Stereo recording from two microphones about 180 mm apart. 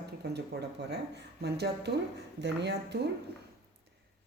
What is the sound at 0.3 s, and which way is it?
Speech, 70° right (ahead or behind).